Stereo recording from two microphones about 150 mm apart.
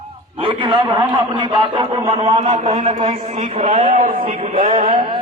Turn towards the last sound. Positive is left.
turn(degrees=-65)  # may be behind; listen again after turning